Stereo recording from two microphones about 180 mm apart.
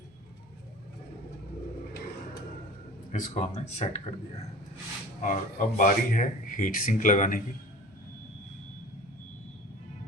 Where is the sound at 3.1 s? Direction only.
40° left (ahead or behind).